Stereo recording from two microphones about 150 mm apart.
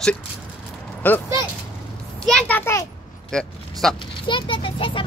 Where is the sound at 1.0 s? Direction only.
10° left (ahead or behind).